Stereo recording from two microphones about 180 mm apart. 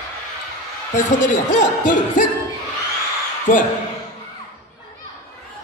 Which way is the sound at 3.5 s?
45° left (ahead or behind).